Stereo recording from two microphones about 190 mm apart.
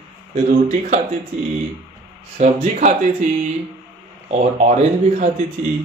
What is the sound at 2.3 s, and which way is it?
Speech, 40° right (ahead or behind).